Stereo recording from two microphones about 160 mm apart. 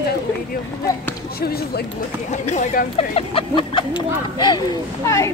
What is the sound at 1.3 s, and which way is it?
Speech, 75° left (ahead or behind).